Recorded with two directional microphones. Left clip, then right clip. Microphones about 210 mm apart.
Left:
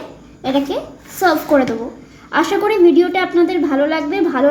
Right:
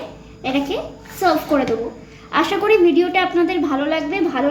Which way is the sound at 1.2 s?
30° left (ahead or behind).